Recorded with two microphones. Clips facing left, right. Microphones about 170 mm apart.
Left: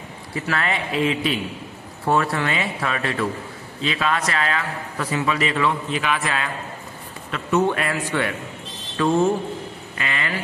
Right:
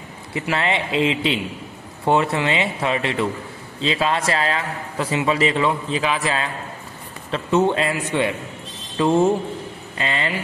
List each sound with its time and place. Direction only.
0.3 s a man's voice: 25° right (ahead or behind)